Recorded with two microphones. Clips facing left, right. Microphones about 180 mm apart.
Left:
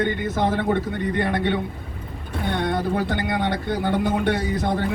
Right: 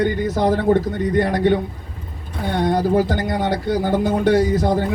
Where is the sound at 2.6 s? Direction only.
40° right (ahead or behind).